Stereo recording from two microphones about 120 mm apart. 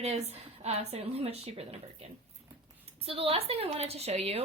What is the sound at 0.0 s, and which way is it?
A woman's voice, 60° right (ahead or behind).